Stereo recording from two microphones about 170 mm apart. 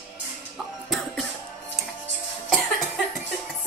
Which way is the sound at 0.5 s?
Centre (ahead or behind).